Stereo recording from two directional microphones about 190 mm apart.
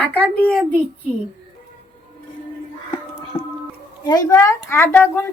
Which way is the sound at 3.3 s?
30° left (ahead or behind).